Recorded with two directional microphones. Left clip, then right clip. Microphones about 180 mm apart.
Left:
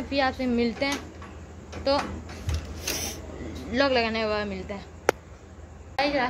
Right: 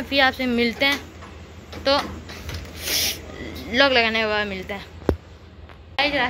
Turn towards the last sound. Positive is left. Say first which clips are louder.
# right 4 dB
turn(degrees=5)  # may be behind; listen again after turning